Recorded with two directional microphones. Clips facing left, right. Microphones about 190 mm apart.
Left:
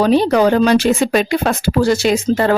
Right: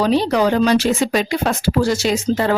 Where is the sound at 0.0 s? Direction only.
50° left (ahead or behind).